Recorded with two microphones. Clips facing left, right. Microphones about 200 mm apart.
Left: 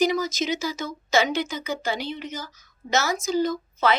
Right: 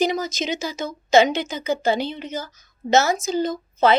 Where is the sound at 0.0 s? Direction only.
20° right (ahead or behind).